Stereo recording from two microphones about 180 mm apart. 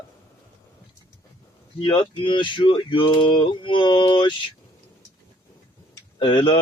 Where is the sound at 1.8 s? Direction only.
30° left (ahead or behind).